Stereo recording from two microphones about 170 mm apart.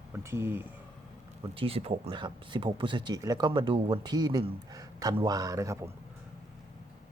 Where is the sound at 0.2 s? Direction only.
15° right (ahead or behind).